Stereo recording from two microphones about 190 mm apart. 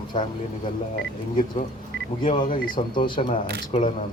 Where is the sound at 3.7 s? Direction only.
40° left (ahead or behind).